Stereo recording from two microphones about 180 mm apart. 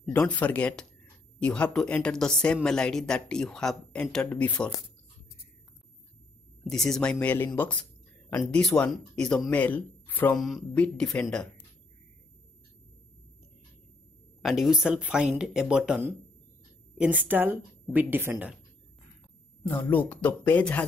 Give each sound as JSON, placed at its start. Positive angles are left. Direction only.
{"t": 0.0, "sound": "a woman's voice", "side_deg": 5}
{"t": 6.7, "sound": "a woman's voice", "side_deg": 0}
{"t": 14.4, "sound": "a woman's voice", "side_deg": 0}
{"t": 19.7, "sound": "speech", "side_deg": 10}